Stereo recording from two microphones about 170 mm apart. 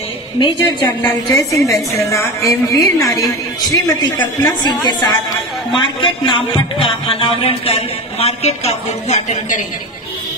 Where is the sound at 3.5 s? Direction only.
20° left (ahead or behind); by 9.7 s 45° left (ahead or behind).